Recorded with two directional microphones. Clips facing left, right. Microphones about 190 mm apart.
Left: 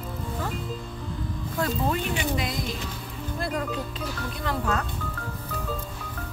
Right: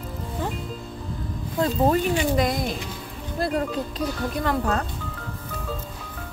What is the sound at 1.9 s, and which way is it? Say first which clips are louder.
Speech: right 6 dB; 45° right (ahead or behind).